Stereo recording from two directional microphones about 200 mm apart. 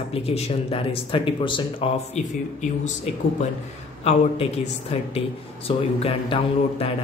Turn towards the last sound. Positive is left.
turn(degrees=30)  # may be behind; listen again after turning